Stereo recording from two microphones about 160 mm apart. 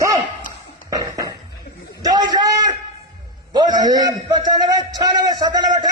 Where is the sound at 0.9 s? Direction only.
20° right (ahead or behind).